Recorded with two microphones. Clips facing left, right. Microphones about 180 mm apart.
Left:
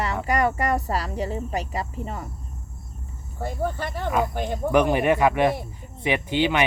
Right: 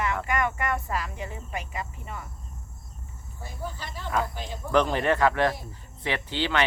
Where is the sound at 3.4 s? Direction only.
60° left (ahead or behind).